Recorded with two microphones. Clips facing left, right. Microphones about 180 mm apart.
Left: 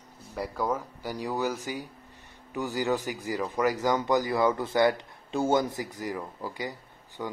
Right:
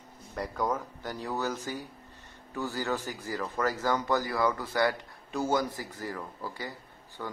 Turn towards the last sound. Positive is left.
turn(degrees=15)  # may be behind; listen again after turning